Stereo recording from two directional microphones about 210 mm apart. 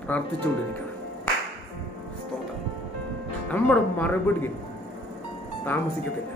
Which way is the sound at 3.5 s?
10° left (ahead or behind).